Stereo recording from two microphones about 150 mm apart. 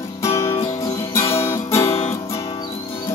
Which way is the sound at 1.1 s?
20° left (ahead or behind).